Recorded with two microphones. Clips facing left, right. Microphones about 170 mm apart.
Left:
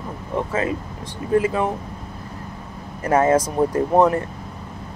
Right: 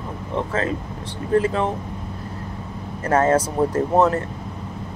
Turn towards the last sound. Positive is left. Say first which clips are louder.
# left 1 dB
turn(degrees=15)  # may be behind; listen again after turning